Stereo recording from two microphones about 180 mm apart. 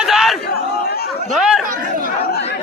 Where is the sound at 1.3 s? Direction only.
Centre (ahead or behind).